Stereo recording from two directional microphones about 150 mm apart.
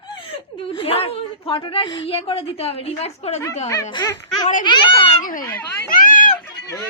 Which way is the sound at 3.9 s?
30° left (ahead or behind).